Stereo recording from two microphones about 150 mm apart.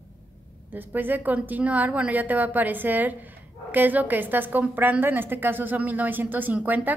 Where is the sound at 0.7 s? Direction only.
10° right (ahead or behind).